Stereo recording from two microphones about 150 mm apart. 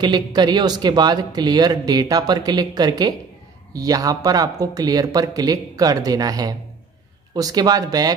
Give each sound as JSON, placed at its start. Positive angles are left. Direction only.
{"t": 0.0, "sound": "speech", "side_deg": -30}